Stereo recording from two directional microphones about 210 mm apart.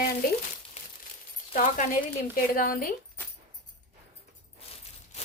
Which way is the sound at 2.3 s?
45° left (ahead or behind).